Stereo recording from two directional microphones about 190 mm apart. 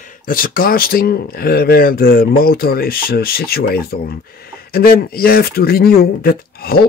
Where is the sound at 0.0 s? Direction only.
50° left (ahead or behind).